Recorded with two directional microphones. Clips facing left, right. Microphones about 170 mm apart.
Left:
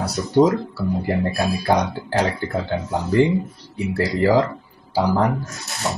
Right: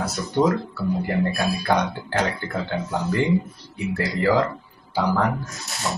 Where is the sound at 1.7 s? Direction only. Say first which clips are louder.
Left 3 dB; 35° left (ahead or behind).